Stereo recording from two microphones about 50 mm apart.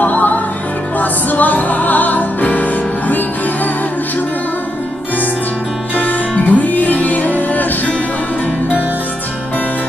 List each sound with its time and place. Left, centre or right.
0.0 s music: left
5.9 s music: left